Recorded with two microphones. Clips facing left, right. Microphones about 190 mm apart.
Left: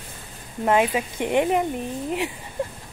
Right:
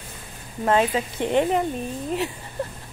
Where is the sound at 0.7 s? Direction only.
10° left (ahead or behind).